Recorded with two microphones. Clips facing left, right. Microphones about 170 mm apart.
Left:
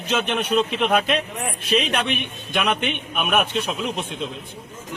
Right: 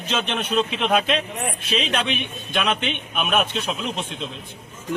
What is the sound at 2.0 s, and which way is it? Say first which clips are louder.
Speech: left 1 dB; 55° left (ahead or behind).